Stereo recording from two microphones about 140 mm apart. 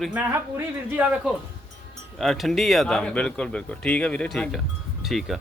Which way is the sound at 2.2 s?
Centre (ahead or behind).